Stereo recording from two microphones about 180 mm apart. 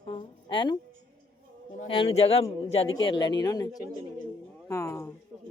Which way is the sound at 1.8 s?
30° left (ahead or behind).